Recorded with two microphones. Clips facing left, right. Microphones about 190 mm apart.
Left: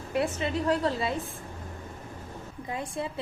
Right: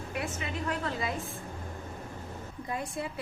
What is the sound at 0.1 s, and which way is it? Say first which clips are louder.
A woman's voice: left 9 dB; 30° left (ahead or behind).